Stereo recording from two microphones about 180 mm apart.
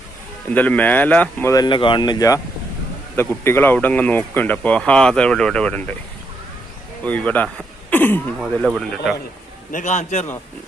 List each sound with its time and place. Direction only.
0.5 s speech: 10° left (ahead or behind)
7.0 s speech: 10° left (ahead or behind)
8.4 s speech: centre (ahead or behind)
9.7 s a man's voice: 40° left (ahead or behind)